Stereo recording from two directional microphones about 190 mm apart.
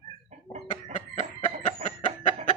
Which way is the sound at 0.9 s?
40° left (ahead or behind).